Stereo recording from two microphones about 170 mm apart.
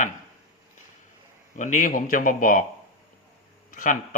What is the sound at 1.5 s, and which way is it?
Speech, 45° left (ahead or behind).